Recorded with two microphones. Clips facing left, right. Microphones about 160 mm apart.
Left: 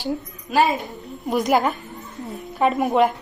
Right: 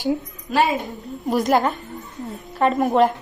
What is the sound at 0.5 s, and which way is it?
A woman's voice, centre (ahead or behind).